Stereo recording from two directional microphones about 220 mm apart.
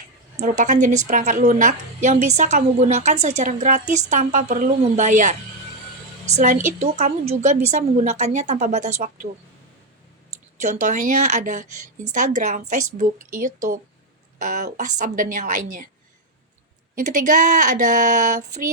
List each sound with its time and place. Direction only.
0.3 s a woman's voice: 35° right (ahead or behind)
10.6 s a woman's voice: 35° right (ahead or behind)
16.9 s a woman's voice: 35° right (ahead or behind)